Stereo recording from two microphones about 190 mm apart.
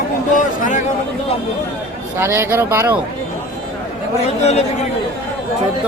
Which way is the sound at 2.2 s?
15° right (ahead or behind).